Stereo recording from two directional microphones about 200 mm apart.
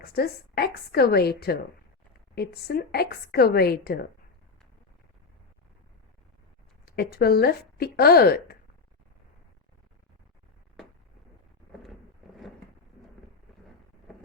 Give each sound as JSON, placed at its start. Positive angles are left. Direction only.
{"t": 0.0, "sound": "speech", "side_deg": 50}
{"t": 6.8, "sound": "speech", "side_deg": 50}